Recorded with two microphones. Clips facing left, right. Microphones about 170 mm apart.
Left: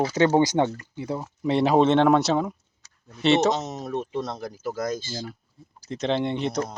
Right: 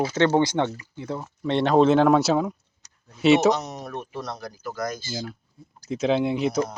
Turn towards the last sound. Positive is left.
turn(degrees=-5)  # may be behind; listen again after turning